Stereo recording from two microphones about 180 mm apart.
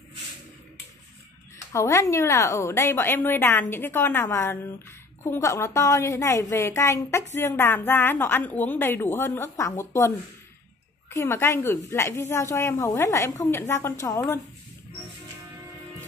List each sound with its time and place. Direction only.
1.7 s a woman's voice: 15° left (ahead or behind)